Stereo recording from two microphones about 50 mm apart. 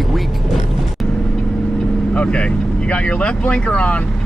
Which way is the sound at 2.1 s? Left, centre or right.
Left.